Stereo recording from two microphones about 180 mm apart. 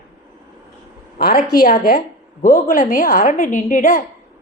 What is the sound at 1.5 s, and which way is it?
A woman's voice, 50° left (ahead or behind).